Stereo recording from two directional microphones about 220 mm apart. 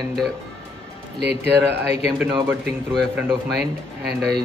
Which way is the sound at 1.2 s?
50° right (ahead or behind).